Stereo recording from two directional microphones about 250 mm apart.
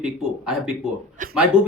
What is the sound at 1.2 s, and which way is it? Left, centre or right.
Speech, right.